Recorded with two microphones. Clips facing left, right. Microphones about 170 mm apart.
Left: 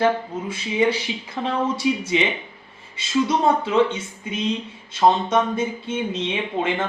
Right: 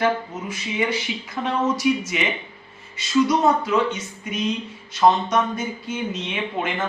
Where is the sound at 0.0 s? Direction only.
30° left (ahead or behind).